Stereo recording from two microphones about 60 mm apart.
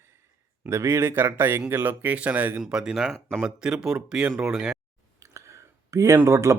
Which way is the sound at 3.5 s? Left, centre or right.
Centre.